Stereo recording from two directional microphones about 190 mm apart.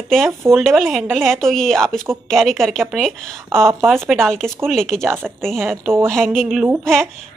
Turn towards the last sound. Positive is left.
turn(degrees=0)  # may be behind; listen again after turning